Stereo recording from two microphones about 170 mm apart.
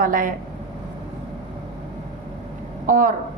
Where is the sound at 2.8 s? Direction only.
55° right (ahead or behind).